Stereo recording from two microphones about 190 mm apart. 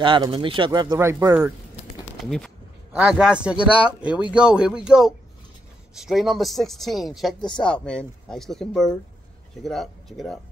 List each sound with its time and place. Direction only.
0.0 s speech: 25° right (ahead or behind)
2.2 s speech: centre (ahead or behind)